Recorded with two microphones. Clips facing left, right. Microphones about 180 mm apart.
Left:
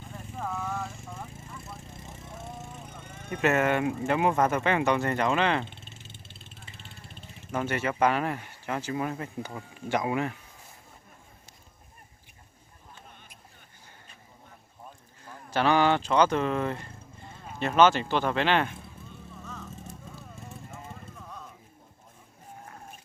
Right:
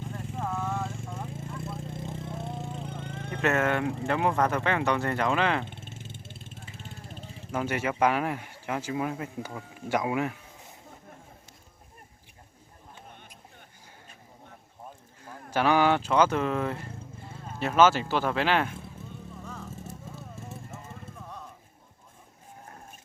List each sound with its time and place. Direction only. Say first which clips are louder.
0.3 s vehicle: right 1 dB; centre (ahead or behind)
0.7 s vehicle: right 2 dB; 15° right (ahead or behind)
1.9 s vehicle: right 8 dB; 55° right (ahead or behind)
2.4 s vehicle: right 5 dB; 30° right (ahead or behind)
3.2 s speech: left 1 dB; 5° left (ahead or behind)
5.6 s vehicle: right 4 dB; 50° right (ahead or behind)
7.5 s speech: even; 10° right (ahead or behind)
15.2 s speech: even; 10° right (ahead or behind)